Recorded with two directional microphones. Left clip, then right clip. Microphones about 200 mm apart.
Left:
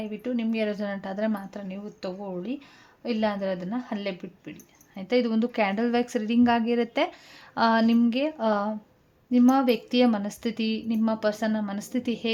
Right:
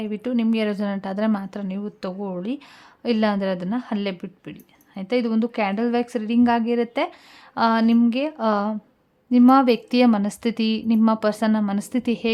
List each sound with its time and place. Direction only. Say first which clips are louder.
0.0 s a woman's voice: right 5 dB; 35° right (ahead or behind)
4.9 s a woman's voice: right 2 dB; 15° right (ahead or behind)